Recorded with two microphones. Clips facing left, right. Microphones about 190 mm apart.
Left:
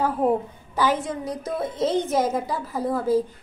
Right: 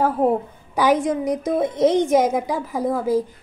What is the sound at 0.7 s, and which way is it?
A woman's voice, 15° right (ahead or behind).